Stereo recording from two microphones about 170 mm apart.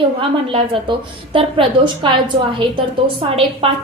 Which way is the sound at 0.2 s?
30° right (ahead or behind).